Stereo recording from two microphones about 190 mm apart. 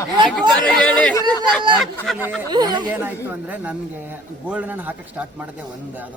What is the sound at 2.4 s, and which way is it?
Speech, 20° right (ahead or behind).